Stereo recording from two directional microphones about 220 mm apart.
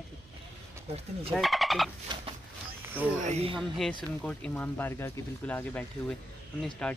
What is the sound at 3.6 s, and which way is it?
Speech, centre (ahead or behind).